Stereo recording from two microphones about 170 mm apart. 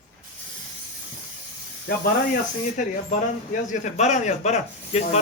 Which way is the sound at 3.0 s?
45° left (ahead or behind).